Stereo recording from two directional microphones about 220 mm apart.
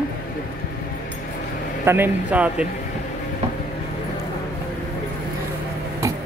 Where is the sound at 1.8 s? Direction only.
10° right (ahead or behind).